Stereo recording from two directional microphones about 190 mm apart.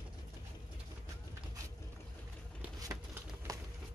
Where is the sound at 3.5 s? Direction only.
15° right (ahead or behind).